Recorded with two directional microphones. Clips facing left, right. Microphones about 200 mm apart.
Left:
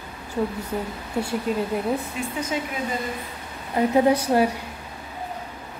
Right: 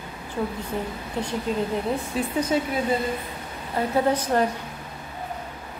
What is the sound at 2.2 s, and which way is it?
Speech, 35° right (ahead or behind).